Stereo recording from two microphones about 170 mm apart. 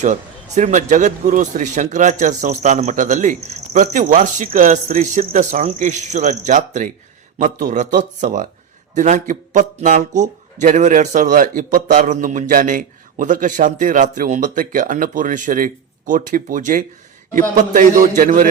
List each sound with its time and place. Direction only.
0.0 s a man's voice: 45° right (ahead or behind)